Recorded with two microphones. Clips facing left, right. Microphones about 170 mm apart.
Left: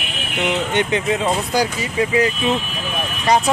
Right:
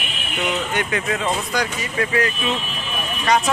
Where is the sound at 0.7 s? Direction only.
25° left (ahead or behind).